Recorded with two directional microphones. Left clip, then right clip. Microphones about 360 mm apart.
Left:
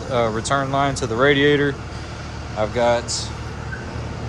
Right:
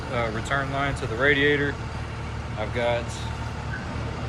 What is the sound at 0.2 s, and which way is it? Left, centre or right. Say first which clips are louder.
Speech: left 6 dB; centre.